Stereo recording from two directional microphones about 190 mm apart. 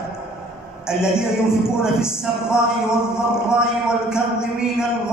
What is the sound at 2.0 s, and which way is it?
Mantra, 5° right (ahead or behind).